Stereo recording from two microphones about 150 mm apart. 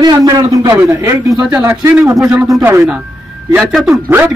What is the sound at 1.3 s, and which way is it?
Speech, 5° right (ahead or behind).